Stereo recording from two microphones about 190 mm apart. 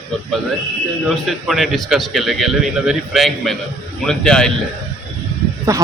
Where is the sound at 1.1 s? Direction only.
Centre (ahead or behind).